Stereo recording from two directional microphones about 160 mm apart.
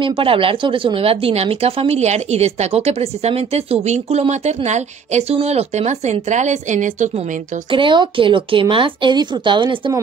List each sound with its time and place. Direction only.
0.0 s speech: 35° right (ahead or behind); by 7.1 s 50° right (ahead or behind)
7.7 s speech: 30° right (ahead or behind)